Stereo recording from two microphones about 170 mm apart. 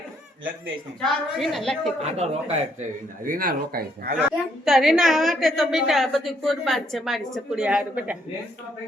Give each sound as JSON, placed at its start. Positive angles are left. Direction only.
{"t": 1.0, "sound": "a woman's voice", "side_deg": 0}
{"t": 2.0, "sound": "speech", "side_deg": -40}
{"t": 3.2, "sound": "speech", "side_deg": -60}
{"t": 4.6, "sound": "a woman's voice", "side_deg": 0}